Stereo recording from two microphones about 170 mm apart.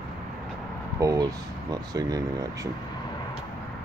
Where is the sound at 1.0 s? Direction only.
20° right (ahead or behind).